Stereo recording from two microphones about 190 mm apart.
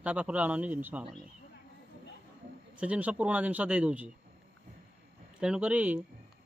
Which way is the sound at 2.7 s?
5° right (ahead or behind).